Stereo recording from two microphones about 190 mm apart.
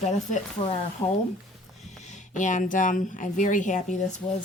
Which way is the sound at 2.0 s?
40° left (ahead or behind).